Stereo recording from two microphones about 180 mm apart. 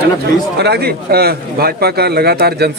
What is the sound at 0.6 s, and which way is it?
Speech, 65° right (ahead or behind).